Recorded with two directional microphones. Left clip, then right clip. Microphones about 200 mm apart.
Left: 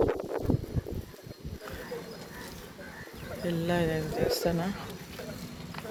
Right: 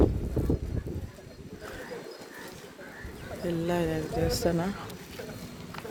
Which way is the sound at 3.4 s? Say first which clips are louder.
Even; 10° right (ahead or behind).